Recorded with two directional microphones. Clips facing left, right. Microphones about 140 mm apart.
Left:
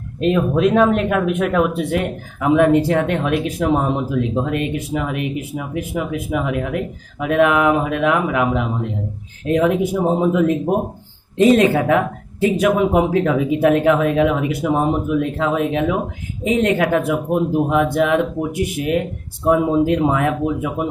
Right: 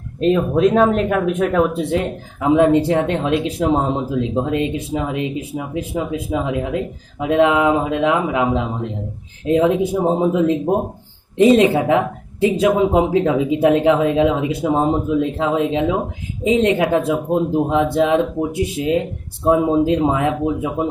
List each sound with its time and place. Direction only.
0.2 s speech: 30° right (ahead or behind)